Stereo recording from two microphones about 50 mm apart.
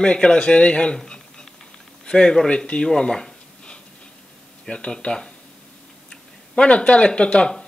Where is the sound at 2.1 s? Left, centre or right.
Centre.